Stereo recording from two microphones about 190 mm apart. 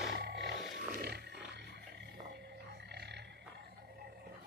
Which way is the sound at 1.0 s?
60° right (ahead or behind).